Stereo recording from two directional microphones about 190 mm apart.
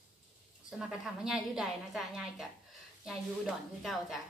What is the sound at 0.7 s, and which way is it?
A woman's voice, 5° right (ahead or behind).